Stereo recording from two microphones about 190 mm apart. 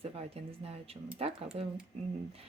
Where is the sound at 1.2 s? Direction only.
30° right (ahead or behind).